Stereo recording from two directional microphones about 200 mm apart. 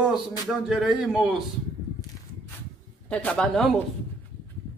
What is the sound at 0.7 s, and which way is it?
Speech, centre (ahead or behind).